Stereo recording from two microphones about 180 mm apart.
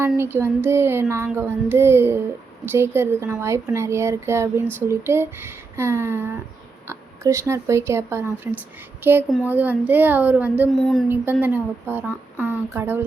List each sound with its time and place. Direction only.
0.2 s speech: 15° right (ahead or behind)
10.7 s a sound: centre (ahead or behind)
11.1 s speech: 10° right (ahead or behind)